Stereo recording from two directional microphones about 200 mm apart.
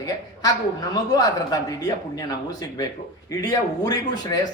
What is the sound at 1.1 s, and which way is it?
Speech, 20° left (ahead or behind).